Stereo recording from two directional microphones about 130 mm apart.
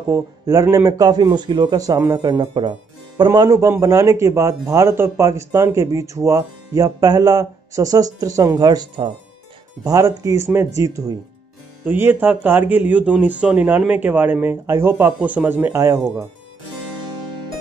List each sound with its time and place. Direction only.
0.1 s speech: 25° right (ahead or behind)
9.8 s speech: 25° right (ahead or behind)
11.8 s speech: 15° right (ahead or behind)